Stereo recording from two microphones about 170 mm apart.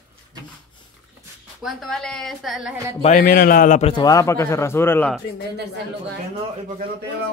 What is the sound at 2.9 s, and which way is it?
Speech, 40° left (ahead or behind).